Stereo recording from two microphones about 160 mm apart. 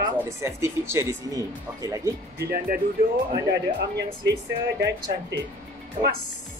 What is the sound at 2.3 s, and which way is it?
Speech, 85° right.